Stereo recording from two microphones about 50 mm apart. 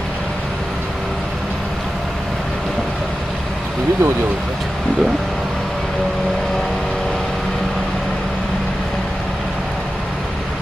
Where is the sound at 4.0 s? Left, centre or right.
Right.